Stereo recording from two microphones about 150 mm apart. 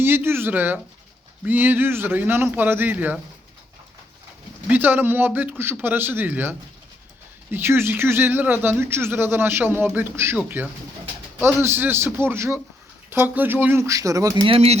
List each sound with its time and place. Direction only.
0.0 s speech: 15° right (ahead or behind)
4.7 s speech: 10° right (ahead or behind)
14.4 s speech: 40° right (ahead or behind)